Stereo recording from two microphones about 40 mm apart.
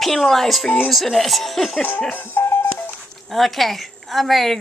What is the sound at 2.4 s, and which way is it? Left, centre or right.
Telephone dialing, left.